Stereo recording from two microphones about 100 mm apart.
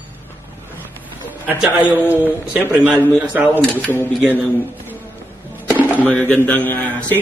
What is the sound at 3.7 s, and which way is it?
Speech, 20° left (ahead or behind).